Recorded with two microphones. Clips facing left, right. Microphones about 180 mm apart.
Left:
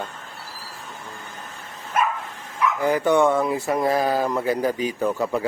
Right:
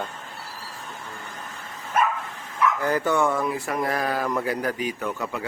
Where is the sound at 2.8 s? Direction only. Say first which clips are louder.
Left 7 dB; 15° left (ahead or behind).